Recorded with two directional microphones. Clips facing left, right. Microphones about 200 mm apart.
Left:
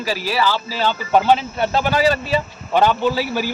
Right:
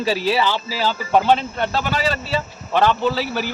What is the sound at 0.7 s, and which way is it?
Speech, 5° right (ahead or behind).